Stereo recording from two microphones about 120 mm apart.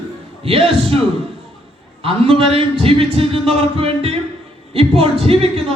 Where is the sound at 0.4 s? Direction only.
50° right (ahead or behind).